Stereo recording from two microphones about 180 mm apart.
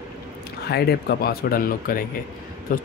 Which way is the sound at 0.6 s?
65° left (ahead or behind).